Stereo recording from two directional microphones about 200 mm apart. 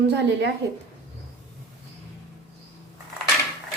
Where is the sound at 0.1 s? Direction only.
60° right (ahead or behind).